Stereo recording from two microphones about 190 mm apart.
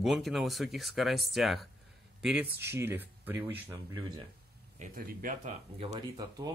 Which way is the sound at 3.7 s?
20° right (ahead or behind).